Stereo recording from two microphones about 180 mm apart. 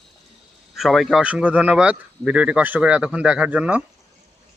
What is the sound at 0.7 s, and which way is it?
Speech, centre (ahead or behind).